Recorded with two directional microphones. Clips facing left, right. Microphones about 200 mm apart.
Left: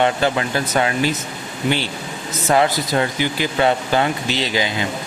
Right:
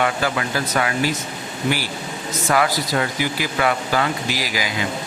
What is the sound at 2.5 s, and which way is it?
Speech, 25° left (ahead or behind).